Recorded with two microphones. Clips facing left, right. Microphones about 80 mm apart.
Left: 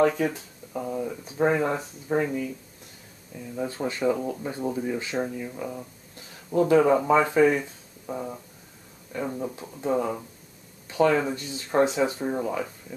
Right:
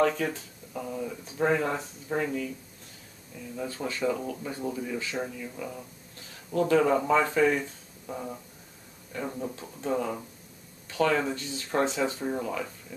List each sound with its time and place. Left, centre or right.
0.0 s speech: centre
3.5 s speech: left
5.5 s speech: centre